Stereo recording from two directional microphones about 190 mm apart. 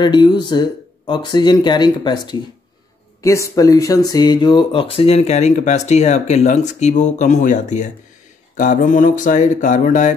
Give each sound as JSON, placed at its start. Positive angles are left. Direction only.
{"t": 0.0, "sound": "speech", "side_deg": 25}